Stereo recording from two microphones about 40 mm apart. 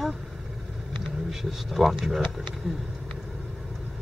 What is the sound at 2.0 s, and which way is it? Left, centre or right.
Speech, centre.